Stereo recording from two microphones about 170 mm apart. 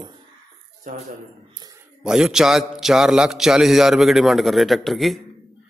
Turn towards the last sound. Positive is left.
turn(degrees=0)  # may be behind; listen again after turning